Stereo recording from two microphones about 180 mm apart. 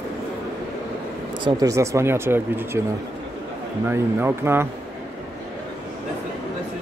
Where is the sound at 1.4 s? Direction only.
20° right (ahead or behind).